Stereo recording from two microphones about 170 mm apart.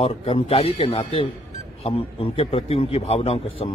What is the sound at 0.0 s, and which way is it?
A man's voice, 35° left (ahead or behind).